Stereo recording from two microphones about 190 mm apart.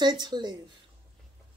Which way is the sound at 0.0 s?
25° right (ahead or behind).